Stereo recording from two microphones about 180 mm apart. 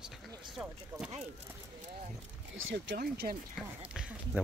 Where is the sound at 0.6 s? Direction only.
5° right (ahead or behind).